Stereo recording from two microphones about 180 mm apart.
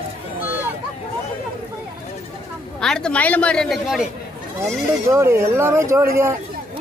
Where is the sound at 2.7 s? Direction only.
5° left (ahead or behind).